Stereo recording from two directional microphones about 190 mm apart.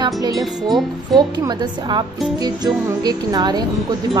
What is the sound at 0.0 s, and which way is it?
Speech, 20° right (ahead or behind).